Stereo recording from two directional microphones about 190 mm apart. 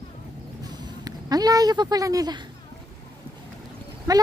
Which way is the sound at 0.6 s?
20° right (ahead or behind).